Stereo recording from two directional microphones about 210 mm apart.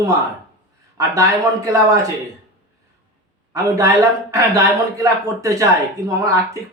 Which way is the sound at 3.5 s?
15° right (ahead or behind).